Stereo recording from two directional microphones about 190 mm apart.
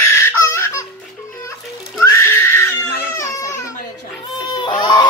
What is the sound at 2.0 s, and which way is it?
Crying, 15° left (ahead or behind).